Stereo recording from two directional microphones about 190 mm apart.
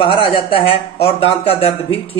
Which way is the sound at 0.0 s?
30° left (ahead or behind).